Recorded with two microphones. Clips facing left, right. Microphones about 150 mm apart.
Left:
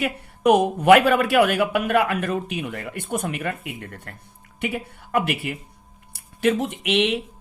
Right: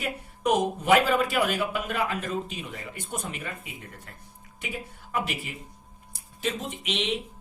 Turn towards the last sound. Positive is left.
turn(degrees=65)  # may be behind; listen again after turning